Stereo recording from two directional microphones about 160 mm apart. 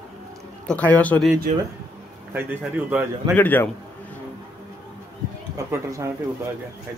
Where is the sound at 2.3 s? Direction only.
10° right (ahead or behind).